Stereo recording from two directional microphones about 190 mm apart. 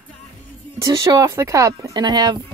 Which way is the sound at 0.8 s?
20° right (ahead or behind).